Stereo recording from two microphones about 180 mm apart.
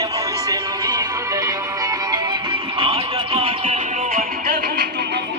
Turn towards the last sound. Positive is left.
turn(degrees=-60)  # may be behind; listen again after turning